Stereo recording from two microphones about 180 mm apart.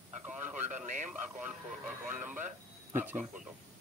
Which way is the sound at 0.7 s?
40° right (ahead or behind).